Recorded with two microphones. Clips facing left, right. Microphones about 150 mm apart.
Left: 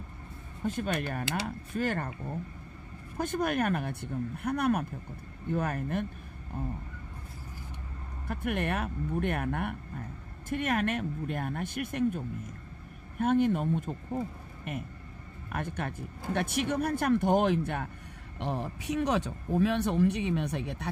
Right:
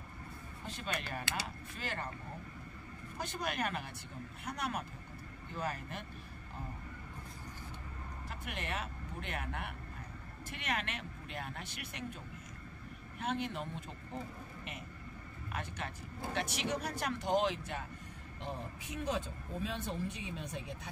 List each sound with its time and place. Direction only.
0.7 s speech: 50° left (ahead or behind)
3.2 s speech: 50° left (ahead or behind)
8.3 s speech: 55° left (ahead or behind)
13.2 s speech: 50° left (ahead or behind)
18.4 s speech: 70° left (ahead or behind)